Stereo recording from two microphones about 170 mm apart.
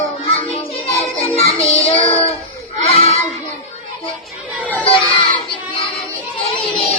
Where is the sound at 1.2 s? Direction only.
35° left (ahead or behind).